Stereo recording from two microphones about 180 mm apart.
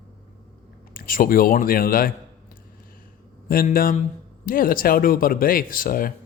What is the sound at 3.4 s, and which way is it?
Speech, 55° left (ahead or behind).